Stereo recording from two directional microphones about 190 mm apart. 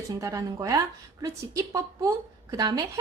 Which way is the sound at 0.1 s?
15° right (ahead or behind).